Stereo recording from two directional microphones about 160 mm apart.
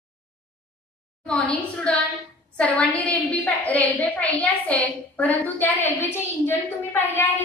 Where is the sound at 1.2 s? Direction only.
5° left (ahead or behind).